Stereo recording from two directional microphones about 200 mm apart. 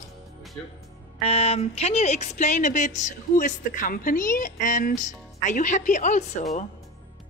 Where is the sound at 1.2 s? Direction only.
30° left (ahead or behind).